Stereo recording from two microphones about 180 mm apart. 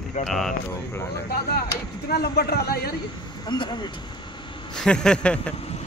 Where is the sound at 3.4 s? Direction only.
25° left (ahead or behind).